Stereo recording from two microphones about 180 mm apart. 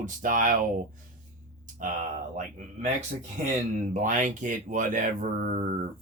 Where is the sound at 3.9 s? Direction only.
45° right (ahead or behind).